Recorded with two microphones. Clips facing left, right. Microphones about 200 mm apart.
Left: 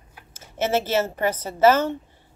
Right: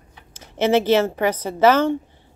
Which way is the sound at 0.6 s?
15° right (ahead or behind).